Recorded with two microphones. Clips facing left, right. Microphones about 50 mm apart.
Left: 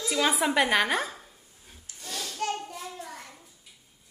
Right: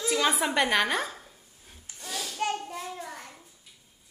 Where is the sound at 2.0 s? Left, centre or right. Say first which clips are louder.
Right 1 dB; centre.